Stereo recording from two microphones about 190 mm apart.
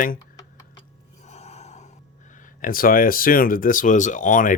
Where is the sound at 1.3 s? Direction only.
35° left (ahead or behind).